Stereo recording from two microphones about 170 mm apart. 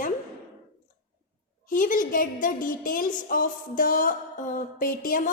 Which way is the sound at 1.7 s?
50° left (ahead or behind).